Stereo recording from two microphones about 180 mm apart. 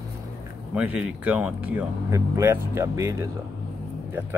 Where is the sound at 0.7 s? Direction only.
5° right (ahead or behind).